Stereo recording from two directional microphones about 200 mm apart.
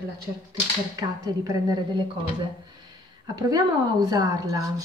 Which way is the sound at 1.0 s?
20° right (ahead or behind).